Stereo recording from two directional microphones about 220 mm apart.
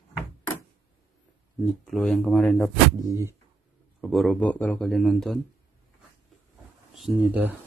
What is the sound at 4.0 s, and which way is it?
Speech, centre (ahead or behind).